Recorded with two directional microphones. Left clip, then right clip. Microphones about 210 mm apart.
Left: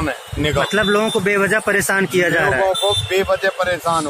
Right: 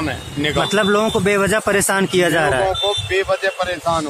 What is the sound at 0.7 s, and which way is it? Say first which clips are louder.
Speech: right 2 dB; 15° right (ahead or behind).